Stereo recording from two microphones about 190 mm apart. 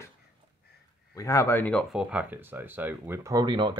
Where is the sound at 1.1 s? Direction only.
15° left (ahead or behind).